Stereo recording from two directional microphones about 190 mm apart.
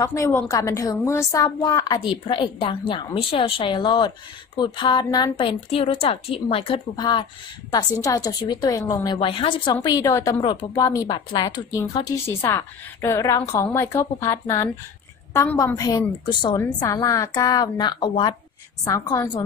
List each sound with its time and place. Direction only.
0.0 s a woman's voice: 15° left (ahead or behind)